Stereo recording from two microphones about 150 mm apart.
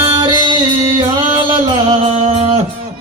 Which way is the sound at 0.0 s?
30° right (ahead or behind).